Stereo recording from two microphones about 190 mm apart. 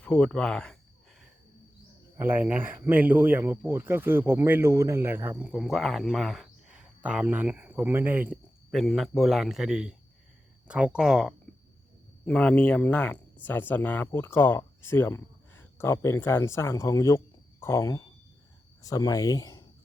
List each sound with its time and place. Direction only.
0.0 s a man's voice: 5° left (ahead or behind)
2.1 s speech: 10° right (ahead or behind)
8.7 s a man's voice: centre (ahead or behind); by 19.6 s 20° left (ahead or behind)